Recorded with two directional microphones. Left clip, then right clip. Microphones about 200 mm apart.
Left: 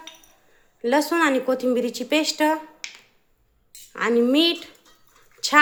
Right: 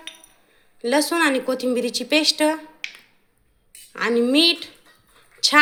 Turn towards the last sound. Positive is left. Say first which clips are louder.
# right 2 dB
turn(degrees=0)  # may be behind; listen again after turning